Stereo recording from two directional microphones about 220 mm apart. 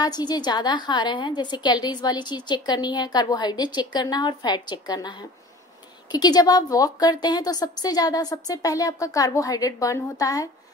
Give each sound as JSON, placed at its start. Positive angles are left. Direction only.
{"t": 0.0, "sound": "a woman's voice", "side_deg": 20}
{"t": 6.1, "sound": "a woman's voice", "side_deg": 20}